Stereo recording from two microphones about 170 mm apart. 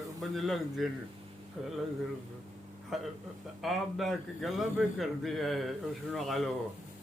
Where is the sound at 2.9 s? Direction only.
Centre (ahead or behind).